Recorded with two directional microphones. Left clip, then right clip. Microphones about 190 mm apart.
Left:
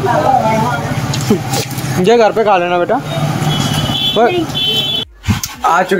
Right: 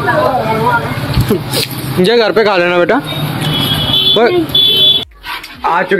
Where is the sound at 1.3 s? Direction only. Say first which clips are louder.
Even; 15° left (ahead or behind).